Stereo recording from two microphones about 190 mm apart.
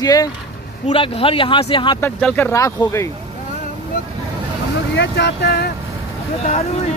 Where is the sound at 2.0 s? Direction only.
10° left (ahead or behind).